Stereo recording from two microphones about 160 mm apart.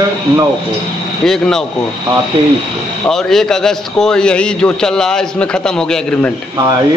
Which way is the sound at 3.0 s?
Centre (ahead or behind).